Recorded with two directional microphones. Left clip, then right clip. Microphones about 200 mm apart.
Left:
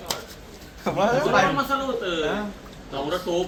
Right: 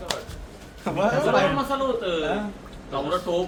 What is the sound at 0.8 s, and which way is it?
Speech, 20° left (ahead or behind).